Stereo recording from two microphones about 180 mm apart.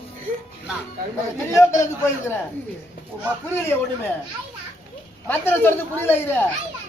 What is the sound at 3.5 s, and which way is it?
Speech, 10° left (ahead or behind).